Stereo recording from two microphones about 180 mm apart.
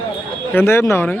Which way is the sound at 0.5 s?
15° left (ahead or behind).